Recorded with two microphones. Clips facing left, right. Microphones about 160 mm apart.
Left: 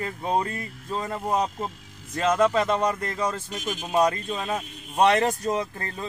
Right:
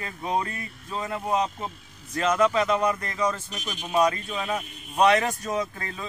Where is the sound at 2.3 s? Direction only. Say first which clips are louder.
Even; 30° left (ahead or behind).